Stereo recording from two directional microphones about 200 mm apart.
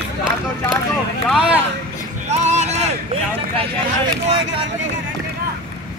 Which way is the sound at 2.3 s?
35° right (ahead or behind).